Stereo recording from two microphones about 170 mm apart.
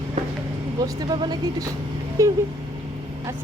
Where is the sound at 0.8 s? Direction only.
25° right (ahead or behind).